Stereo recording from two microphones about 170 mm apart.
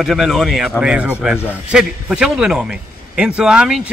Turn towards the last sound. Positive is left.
turn(degrees=-5)  # may be behind; listen again after turning